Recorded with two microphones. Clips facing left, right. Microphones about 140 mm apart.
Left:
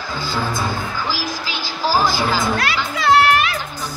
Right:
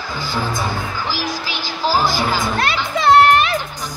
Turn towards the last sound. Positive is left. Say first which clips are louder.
# right 3 dB
turn(degrees=-25)  # may be behind; listen again after turning